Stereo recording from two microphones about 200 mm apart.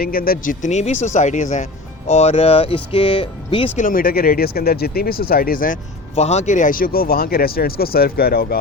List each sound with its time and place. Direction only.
0.0 s speech: 45° left (ahead or behind); by 3.7 s 25° left (ahead or behind)
3.8 s speech: 45° left (ahead or behind)